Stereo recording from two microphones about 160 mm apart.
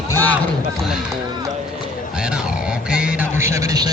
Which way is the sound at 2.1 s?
5° right (ahead or behind).